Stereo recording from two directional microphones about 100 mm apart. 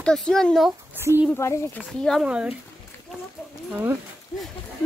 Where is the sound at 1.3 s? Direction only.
30° left (ahead or behind).